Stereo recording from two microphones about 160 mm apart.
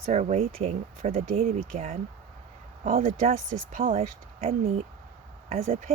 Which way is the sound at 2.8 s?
60° right (ahead or behind).